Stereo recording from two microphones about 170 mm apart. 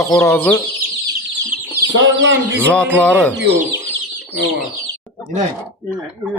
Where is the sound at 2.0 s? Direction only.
90° right.